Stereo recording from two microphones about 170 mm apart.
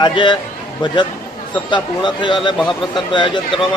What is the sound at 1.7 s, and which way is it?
Speech, 25° left (ahead or behind).